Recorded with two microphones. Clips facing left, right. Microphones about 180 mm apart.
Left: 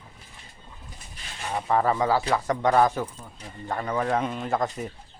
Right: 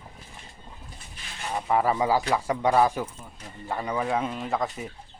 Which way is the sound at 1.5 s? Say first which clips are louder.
Left 1 dB; 5° right (ahead or behind).